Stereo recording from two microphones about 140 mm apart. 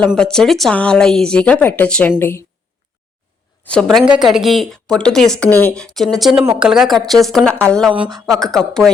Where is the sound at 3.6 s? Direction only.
5° left (ahead or behind).